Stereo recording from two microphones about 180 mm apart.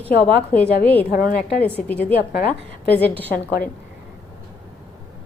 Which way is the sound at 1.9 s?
10° left (ahead or behind).